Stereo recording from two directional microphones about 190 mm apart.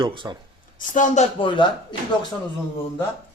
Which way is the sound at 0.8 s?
40° left (ahead or behind).